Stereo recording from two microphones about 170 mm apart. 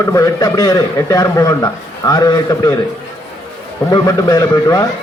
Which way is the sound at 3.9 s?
20° left (ahead or behind).